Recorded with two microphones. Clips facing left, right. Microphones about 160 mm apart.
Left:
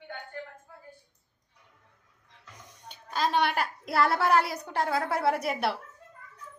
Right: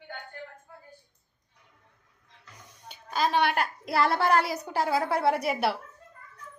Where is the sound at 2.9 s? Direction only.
5° right (ahead or behind).